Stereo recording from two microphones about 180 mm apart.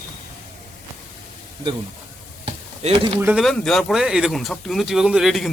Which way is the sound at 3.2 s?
Centre (ahead or behind).